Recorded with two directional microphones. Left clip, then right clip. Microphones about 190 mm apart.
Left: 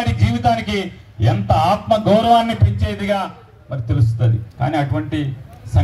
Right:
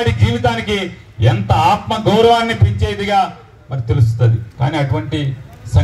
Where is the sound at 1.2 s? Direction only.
65° left (ahead or behind).